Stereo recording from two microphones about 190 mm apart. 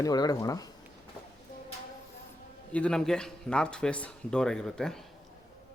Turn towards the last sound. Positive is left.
turn(degrees=5)  # may be behind; listen again after turning